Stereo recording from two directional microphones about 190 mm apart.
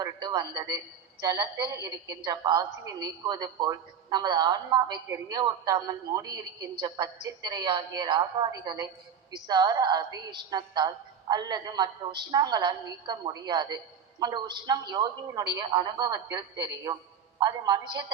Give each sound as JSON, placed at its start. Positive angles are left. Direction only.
{"t": 0.0, "sound": "a woman's voice", "side_deg": -20}